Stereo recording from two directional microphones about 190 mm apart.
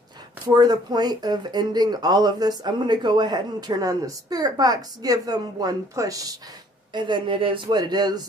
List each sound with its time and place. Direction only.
0.5 s speech: 20° right (ahead or behind)